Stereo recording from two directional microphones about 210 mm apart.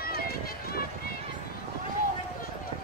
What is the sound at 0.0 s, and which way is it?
Run, 45° left (ahead or behind).